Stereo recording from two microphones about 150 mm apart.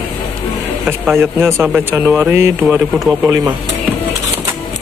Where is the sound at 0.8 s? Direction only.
15° right (ahead or behind).